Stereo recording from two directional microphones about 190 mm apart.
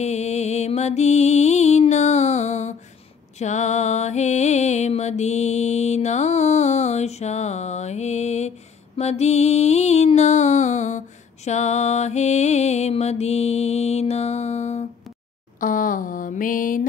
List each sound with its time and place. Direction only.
0.0 s music: 35° left (ahead or behind)
15.6 s mantra: 45° left (ahead or behind)